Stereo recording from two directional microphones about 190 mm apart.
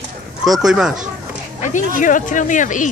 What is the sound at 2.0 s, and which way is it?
Speech, 45° left (ahead or behind).